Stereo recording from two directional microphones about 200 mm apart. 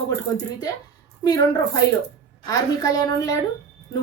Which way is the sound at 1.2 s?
20° left (ahead or behind).